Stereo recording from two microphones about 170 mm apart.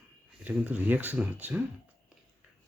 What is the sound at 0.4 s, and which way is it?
Speech, 10° right (ahead or behind).